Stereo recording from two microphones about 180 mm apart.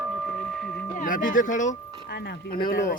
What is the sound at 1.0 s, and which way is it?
Speech, 45° left (ahead or behind).